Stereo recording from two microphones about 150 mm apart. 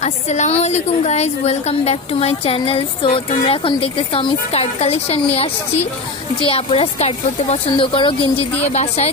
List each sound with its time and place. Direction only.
0.0 s a woman's voice: 50° left (ahead or behind)
8.6 s a woman's voice: 45° left (ahead or behind)